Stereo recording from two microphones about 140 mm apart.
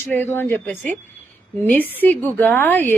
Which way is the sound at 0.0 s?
15° left (ahead or behind).